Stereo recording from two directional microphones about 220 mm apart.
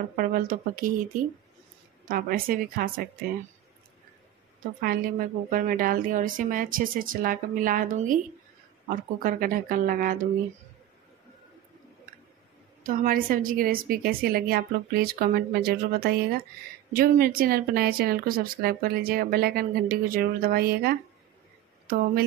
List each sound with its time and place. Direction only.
0.1 s a woman's voice: 40° right (ahead or behind)
4.8 s a woman's voice: 40° right (ahead or behind)
12.8 s a woman's voice: 40° right (ahead or behind)